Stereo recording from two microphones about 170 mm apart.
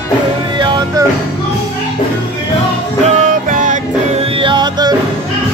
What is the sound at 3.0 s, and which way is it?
Music, 45° right (ahead or behind).